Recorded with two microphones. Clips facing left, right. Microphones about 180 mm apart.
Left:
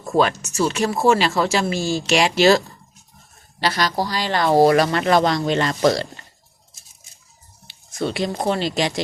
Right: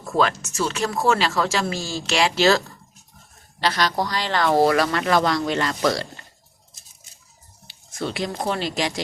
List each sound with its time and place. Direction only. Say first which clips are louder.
0.0 s speech: left 3 dB; 15° left (ahead or behind)
3.6 s speech: left 1 dB; 10° left (ahead or behind); by 6.1 s 25° left (ahead or behind)
8.1 s speech: left 3 dB; 25° left (ahead or behind)